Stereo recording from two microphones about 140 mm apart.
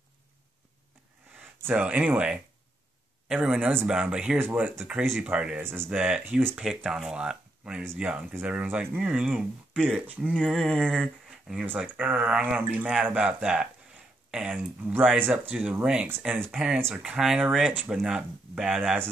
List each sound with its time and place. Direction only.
1.6 s speech: 10° right (ahead or behind)
5.9 s speech: 5° right (ahead or behind)
10.3 s speech: 5° left (ahead or behind)